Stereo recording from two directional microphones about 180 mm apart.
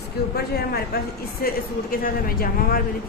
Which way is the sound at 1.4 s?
55° left (ahead or behind).